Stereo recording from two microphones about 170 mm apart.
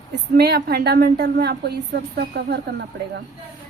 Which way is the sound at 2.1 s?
80° right.